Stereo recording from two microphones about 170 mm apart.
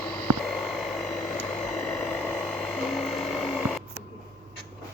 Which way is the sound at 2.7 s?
Centre (ahead or behind).